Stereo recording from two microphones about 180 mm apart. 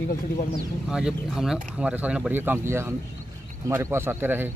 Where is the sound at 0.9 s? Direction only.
5° right (ahead or behind).